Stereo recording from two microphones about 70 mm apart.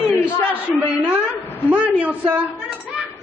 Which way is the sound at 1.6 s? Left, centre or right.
Centre.